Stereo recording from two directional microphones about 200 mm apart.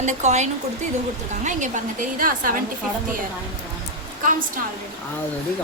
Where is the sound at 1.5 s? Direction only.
40° right (ahead or behind).